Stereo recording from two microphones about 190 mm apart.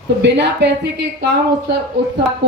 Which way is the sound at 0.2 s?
65° right (ahead or behind).